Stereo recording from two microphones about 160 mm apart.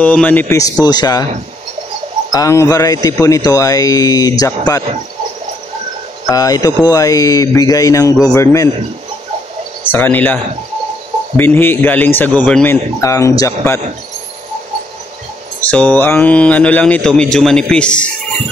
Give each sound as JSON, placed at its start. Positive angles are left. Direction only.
{"t": 0.0, "sound": "speech", "side_deg": 10}
{"t": 2.3, "sound": "speech", "side_deg": 20}
{"t": 6.2, "sound": "speech", "side_deg": 20}
{"t": 9.9, "sound": "a man's voice", "side_deg": 10}
{"t": 13.0, "sound": "speech", "side_deg": 20}
{"t": 15.7, "sound": "a man's voice", "side_deg": 10}